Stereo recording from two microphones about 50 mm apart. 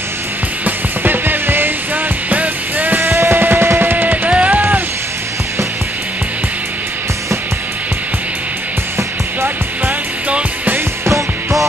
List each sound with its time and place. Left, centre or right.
0.7 s music: right
2.2 s music: right
3.0 s music: right
4.3 s music: right
4.6 s music: right